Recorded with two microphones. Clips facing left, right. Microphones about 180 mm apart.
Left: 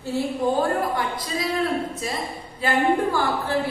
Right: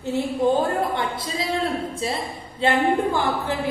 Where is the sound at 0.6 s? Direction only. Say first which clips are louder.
Even; 25° right (ahead or behind).